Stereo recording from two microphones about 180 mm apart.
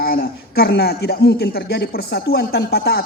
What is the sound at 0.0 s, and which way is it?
Speech, 60° left (ahead or behind).